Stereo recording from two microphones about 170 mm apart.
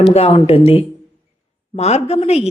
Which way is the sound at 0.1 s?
35° left (ahead or behind).